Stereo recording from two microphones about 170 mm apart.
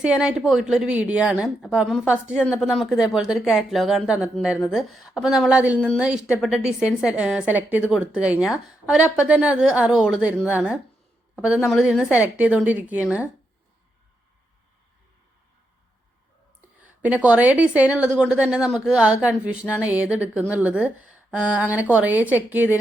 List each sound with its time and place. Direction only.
0.0 s a woman's voice: 5° right (ahead or behind)
16.8 s a woman's voice: 10° right (ahead or behind)